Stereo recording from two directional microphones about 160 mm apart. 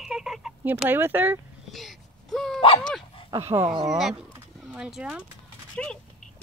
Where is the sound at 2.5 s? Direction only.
35° left (ahead or behind).